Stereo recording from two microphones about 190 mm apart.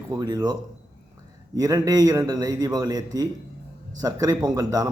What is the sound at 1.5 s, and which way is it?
A man's voice, 20° right (ahead or behind).